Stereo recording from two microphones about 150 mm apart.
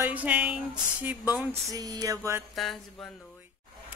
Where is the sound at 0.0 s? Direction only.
10° right (ahead or behind).